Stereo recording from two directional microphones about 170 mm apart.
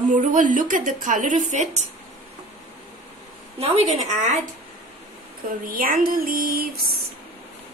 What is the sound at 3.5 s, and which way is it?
Speech, 35° right (ahead or behind).